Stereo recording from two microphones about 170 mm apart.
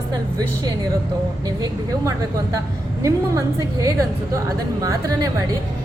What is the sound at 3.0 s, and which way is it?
Speech, 20° right (ahead or behind).